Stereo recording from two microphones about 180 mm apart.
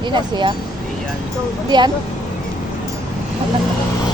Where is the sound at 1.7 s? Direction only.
25° right (ahead or behind).